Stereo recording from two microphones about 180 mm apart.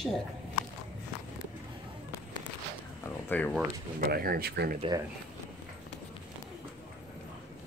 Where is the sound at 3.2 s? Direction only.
10° left (ahead or behind).